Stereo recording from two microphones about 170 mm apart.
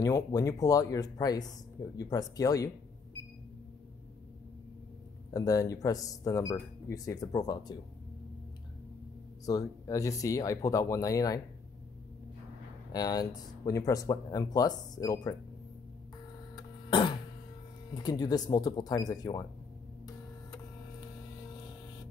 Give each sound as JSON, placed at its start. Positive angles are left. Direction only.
{"t": 0.0, "sound": "speech", "side_deg": 20}
{"t": 5.3, "sound": "speech", "side_deg": 20}
{"t": 9.5, "sound": "speech", "side_deg": 20}
{"t": 12.9, "sound": "speech", "side_deg": 25}
{"t": 16.5, "sound": "cough", "side_deg": 25}
{"t": 17.9, "sound": "speech", "side_deg": 25}